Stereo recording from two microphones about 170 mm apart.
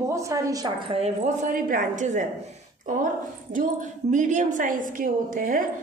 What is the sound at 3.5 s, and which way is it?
A woman's voice, 45° right (ahead or behind).